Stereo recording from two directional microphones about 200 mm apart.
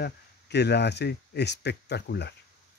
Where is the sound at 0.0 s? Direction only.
55° left (ahead or behind).